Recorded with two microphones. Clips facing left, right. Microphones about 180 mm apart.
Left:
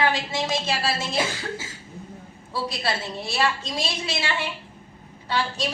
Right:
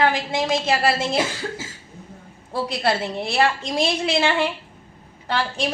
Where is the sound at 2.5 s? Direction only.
55° right (ahead or behind).